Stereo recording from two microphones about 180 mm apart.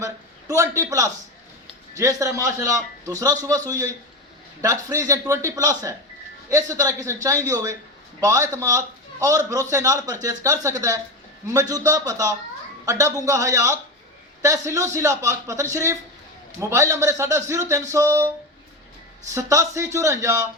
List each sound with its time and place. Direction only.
0.0 s a sound: 20° right (ahead or behind)
2.0 s a man's voice: 20° right (ahead or behind)
19.3 s a man's voice: 15° right (ahead or behind)